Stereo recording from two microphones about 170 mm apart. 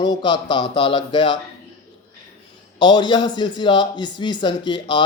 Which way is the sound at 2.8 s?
25° left (ahead or behind).